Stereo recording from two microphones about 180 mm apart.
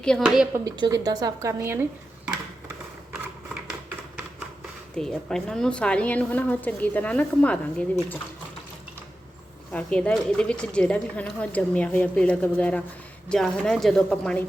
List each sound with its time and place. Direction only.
0.0 s speech: centre (ahead or behind)
0.5 s speech: 20° right (ahead or behind)
4.9 s speech: 5° left (ahead or behind)
9.7 s speech: 5° left (ahead or behind)